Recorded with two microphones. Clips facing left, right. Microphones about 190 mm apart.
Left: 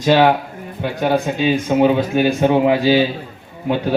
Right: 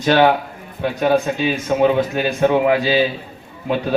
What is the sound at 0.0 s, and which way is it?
A man's voice, 10° left (ahead or behind).